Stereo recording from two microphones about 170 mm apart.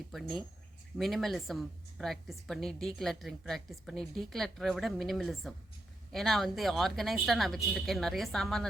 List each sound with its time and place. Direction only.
0.1 s a woman's voice: centre (ahead or behind)